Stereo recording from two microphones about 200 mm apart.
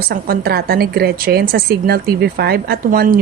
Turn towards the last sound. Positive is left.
turn(degrees=-45)  # may be behind; listen again after turning